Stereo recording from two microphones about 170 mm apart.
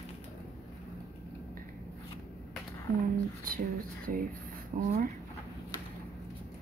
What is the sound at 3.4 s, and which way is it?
Speech, 55° right (ahead or behind).